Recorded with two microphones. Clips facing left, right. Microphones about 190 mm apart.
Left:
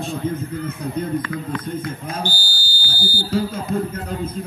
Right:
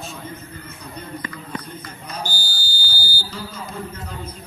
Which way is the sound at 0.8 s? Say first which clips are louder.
Left 9 dB; 55° left (ahead or behind).